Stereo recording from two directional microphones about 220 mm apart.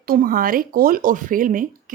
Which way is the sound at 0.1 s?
40° right (ahead or behind).